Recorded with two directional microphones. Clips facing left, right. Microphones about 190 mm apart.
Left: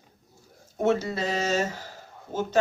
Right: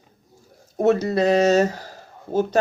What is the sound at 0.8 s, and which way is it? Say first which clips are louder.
Speech: right 6 dB; 40° right (ahead or behind).